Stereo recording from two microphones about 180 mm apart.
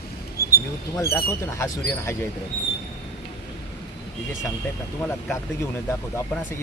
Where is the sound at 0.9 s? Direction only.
15° left (ahead or behind).